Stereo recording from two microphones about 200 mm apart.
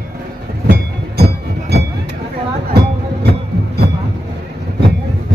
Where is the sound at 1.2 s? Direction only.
55° right (ahead or behind).